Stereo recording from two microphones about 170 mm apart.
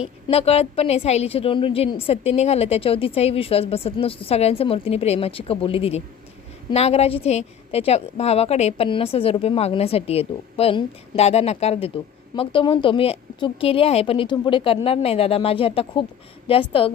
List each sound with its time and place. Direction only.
0.0 s a woman's voice: 35° left (ahead or behind)